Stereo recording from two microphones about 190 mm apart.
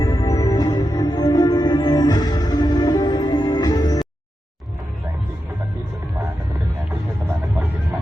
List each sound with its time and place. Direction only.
0.0 s music: 20° left (ahead or behind)